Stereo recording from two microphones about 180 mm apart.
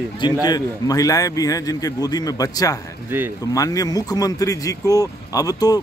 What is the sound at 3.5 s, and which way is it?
A man's voice, 20° left (ahead or behind).